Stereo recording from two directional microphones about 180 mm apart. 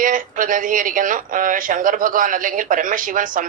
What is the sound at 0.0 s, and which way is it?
A man's voice, 50° right (ahead or behind).